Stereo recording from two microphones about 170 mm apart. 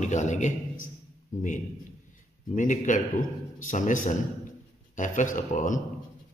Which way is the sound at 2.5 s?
45° left (ahead or behind).